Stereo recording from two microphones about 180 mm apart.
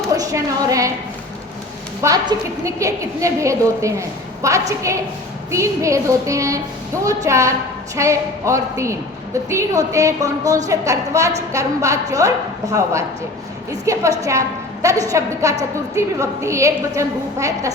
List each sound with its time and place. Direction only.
0.1 s a woman's voice: 20° right (ahead or behind)
2.0 s a woman's voice: 20° right (ahead or behind)